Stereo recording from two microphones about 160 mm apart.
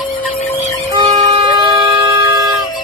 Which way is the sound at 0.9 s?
30° right (ahead or behind).